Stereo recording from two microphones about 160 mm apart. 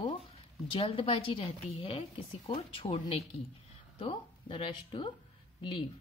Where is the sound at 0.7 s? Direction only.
35° left (ahead or behind).